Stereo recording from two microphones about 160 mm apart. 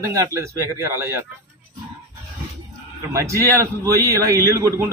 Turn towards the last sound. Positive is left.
turn(degrees=-20)  # may be behind; listen again after turning